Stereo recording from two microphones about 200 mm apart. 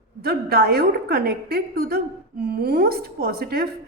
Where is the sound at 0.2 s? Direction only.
50° right (ahead or behind).